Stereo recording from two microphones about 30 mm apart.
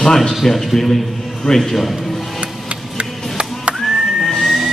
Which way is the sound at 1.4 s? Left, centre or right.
Centre.